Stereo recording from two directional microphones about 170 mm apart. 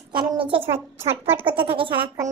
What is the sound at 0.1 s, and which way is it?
Speech, 30° right (ahead or behind).